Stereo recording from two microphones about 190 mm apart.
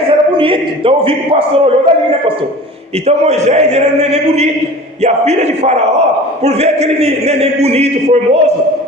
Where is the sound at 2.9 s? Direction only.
35° right (ahead or behind).